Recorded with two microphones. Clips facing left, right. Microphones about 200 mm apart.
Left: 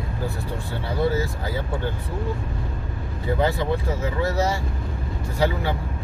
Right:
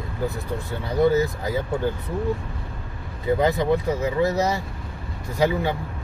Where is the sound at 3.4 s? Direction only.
20° right (ahead or behind).